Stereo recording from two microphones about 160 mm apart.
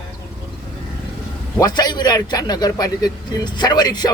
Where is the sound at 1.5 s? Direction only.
25° left (ahead or behind).